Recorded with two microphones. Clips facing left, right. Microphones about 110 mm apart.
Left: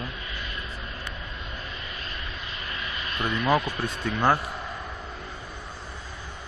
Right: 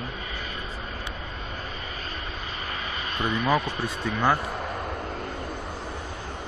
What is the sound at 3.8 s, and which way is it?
Speech, centre (ahead or behind).